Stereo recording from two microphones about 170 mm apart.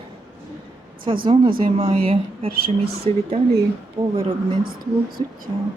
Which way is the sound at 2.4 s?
60° right (ahead or behind).